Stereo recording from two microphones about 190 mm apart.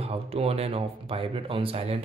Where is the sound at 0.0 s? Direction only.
30° right (ahead or behind).